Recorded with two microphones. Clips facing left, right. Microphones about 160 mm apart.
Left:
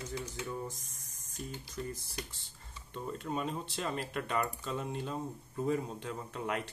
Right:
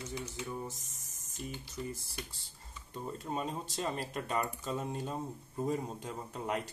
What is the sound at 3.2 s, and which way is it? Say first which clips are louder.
Speech: left 1 dB; 35° right (ahead or behind).